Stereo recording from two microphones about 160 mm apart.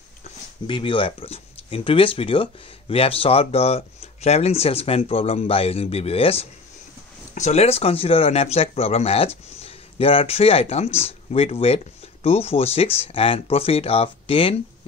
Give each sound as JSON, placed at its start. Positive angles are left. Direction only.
{"t": 0.7, "sound": "speech", "side_deg": 30}